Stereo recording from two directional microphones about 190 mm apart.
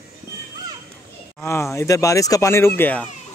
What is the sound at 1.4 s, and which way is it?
Speech, 15° left (ahead or behind).